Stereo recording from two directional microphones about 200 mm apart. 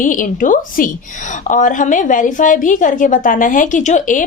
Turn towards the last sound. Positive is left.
turn(degrees=40)  # may be behind; listen again after turning